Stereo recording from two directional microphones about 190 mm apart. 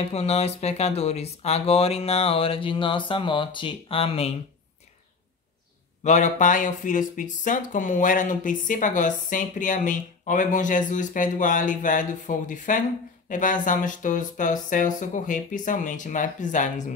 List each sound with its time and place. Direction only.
0.1 s speech: 35° left (ahead or behind)
6.0 s speech: 40° left (ahead or behind)